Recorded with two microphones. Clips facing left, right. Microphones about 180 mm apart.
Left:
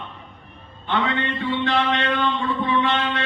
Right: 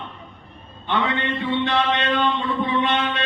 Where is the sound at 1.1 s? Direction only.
20° right (ahead or behind).